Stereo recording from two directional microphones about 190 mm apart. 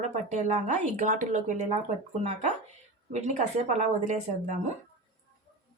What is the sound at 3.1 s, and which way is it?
Speech, 40° right (ahead or behind).